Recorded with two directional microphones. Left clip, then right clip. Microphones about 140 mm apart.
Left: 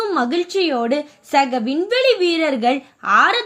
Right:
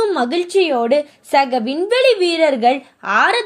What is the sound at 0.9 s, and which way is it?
A woman's voice, 15° right (ahead or behind).